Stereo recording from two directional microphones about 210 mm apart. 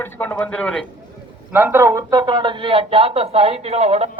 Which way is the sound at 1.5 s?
10° right (ahead or behind).